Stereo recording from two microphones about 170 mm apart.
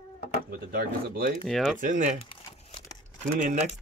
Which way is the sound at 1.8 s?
50° right (ahead or behind).